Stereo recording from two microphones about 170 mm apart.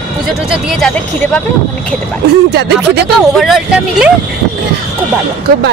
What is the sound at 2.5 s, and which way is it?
Speech, 70° right (ahead or behind).